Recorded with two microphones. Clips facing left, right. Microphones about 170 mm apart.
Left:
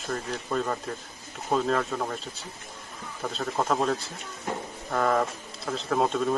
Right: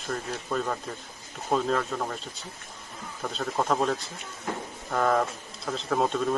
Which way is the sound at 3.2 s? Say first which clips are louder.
Even; centre (ahead or behind).